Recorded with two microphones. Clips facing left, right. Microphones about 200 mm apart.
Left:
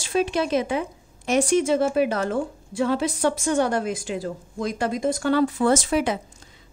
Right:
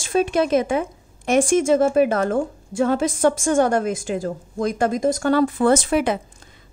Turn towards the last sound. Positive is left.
turn(degrees=-55)  # may be behind; listen again after turning